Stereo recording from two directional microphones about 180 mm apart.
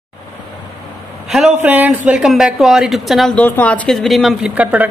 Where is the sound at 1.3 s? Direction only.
5° right (ahead or behind).